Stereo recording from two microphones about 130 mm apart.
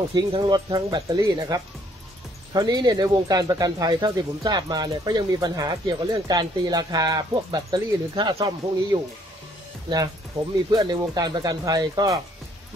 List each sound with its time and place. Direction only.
0.1 s speech: 35° right (ahead or behind)
10.7 s speech: 30° right (ahead or behind)